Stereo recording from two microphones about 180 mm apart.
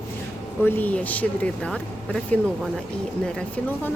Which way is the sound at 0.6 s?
10° left (ahead or behind).